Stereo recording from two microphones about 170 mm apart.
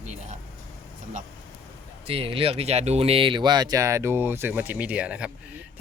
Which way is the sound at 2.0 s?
35° right (ahead or behind).